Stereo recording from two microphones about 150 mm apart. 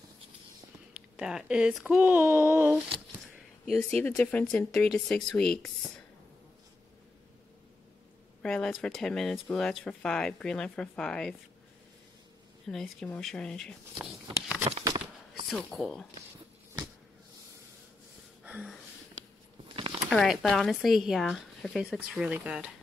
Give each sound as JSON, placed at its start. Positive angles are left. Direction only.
{"t": 1.1, "sound": "speech", "side_deg": -5}
{"t": 3.6, "sound": "speech", "side_deg": 5}
{"t": 8.4, "sound": "speech", "side_deg": 5}
{"t": 12.6, "sound": "speech", "side_deg": 5}
{"t": 15.5, "sound": "speech", "side_deg": 0}
{"t": 18.4, "sound": "a sound", "side_deg": -5}
{"t": 19.7, "sound": "a sound", "side_deg": -35}
{"t": 20.1, "sound": "speech", "side_deg": 0}